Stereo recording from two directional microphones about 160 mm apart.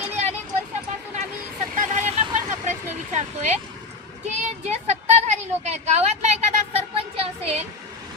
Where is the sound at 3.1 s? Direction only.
45° right (ahead or behind).